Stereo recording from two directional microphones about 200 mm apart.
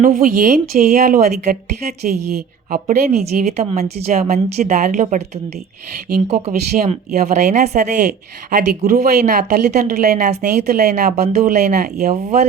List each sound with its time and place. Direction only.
0.0 s speech: 45° right (ahead or behind)
6.1 s speech: 50° right (ahead or behind)
7.7 s speech: 35° right (ahead or behind)